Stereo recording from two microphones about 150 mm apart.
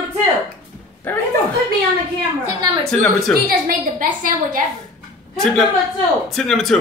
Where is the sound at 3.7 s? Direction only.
65° right (ahead or behind).